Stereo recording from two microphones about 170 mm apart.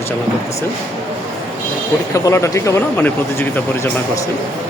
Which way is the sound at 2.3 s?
15° left (ahead or behind).